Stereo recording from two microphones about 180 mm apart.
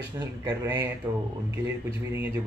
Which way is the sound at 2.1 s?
15° right (ahead or behind).